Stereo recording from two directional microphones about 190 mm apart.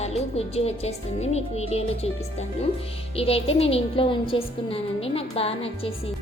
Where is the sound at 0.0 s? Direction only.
35° left (ahead or behind).